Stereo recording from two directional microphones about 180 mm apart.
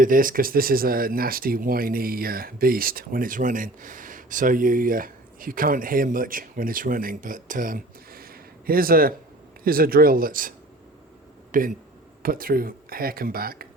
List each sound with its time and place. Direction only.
0.0 s speech: 50° right (ahead or behind)
11.5 s speech: 45° right (ahead or behind)